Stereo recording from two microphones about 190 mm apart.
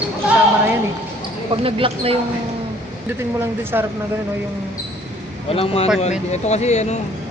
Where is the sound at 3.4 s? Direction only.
10° right (ahead or behind).